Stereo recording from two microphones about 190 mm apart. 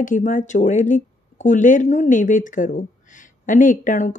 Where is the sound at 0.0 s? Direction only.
45° left (ahead or behind).